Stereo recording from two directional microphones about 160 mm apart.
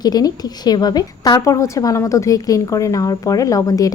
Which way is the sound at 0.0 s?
25° left (ahead or behind).